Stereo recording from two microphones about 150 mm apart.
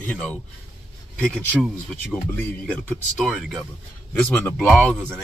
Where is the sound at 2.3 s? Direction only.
10° left (ahead or behind).